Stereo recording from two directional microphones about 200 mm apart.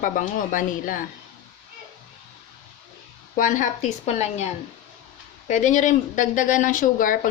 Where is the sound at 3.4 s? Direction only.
40° left (ahead or behind).